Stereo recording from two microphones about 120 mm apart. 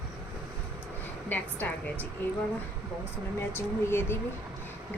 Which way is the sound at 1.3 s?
15° left (ahead or behind).